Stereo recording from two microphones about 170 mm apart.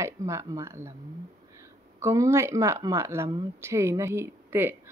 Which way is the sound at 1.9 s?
15° right (ahead or behind).